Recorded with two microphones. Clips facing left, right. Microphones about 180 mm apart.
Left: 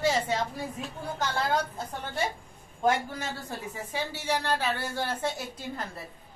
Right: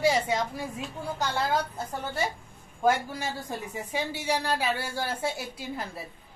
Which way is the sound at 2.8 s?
10° right (ahead or behind).